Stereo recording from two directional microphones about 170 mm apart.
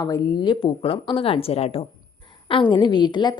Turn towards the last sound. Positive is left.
turn(degrees=25)  # may be behind; listen again after turning